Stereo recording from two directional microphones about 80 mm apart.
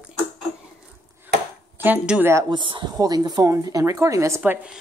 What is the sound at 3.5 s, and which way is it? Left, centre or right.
Speech, right.